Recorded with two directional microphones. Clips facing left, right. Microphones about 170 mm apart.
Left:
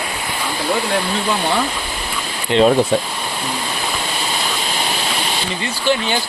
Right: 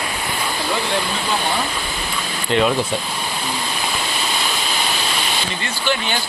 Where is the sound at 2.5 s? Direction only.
30° left (ahead or behind).